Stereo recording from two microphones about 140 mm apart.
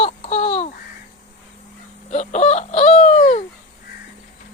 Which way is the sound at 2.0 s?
55° left (ahead or behind).